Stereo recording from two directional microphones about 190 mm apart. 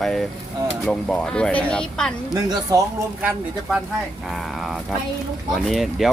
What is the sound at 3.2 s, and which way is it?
Speech, 10° right (ahead or behind).